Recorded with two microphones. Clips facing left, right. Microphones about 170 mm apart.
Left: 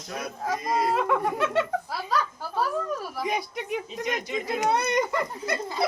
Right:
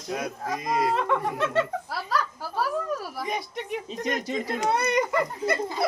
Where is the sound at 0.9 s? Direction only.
5° left (ahead or behind).